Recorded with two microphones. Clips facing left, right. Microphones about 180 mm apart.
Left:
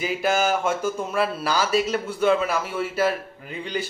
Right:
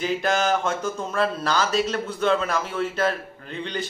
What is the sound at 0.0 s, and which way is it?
Speech, 5° left (ahead or behind).